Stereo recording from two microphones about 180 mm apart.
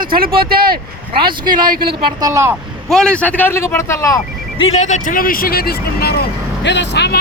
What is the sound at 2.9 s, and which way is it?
Speech, 5° left (ahead or behind).